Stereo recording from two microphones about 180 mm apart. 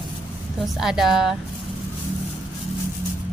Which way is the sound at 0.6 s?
Centre (ahead or behind).